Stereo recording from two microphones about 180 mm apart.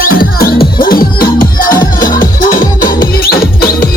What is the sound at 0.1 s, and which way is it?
Music, 55° left (ahead or behind).